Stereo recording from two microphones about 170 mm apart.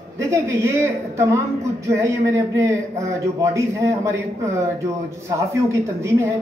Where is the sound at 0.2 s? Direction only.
20° right (ahead or behind).